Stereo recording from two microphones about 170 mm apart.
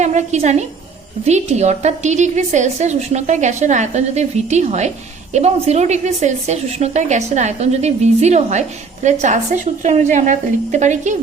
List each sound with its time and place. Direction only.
0.0 s a woman's voice: 45° right (ahead or behind)